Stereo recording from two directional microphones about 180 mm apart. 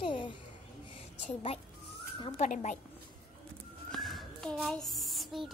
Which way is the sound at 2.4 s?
40° left (ahead or behind).